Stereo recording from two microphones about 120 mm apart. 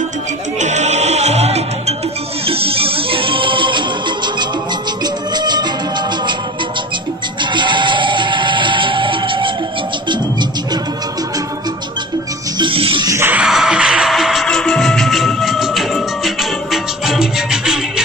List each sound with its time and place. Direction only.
0.6 s music: 75° right (ahead or behind)
2.4 s music: 50° right (ahead or behind)
5.0 s music: 35° right (ahead or behind)
7.5 s music: 40° right (ahead or behind)
12.5 s music: 45° right (ahead or behind)
13.0 s music: 25° right (ahead or behind)
13.3 s music: 5° right (ahead or behind)